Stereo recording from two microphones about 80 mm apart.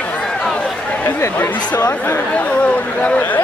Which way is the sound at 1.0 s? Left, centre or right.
Left.